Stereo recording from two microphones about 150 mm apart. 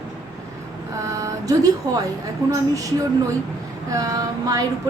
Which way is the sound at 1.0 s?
20° right (ahead or behind).